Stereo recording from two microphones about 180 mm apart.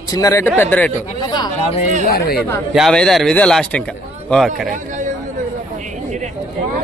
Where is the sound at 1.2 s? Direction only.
25° left (ahead or behind).